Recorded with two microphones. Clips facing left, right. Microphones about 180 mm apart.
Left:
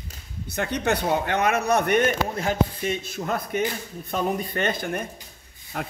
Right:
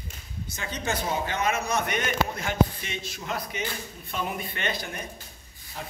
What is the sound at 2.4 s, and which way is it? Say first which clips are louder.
Speech: left 2 dB; 35° left (ahead or behind).